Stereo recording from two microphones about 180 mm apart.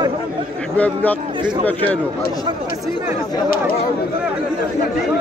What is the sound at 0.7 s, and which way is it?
Speech, 10° left (ahead or behind).